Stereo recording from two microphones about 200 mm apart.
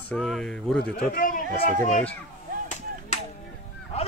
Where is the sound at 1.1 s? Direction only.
45° left (ahead or behind).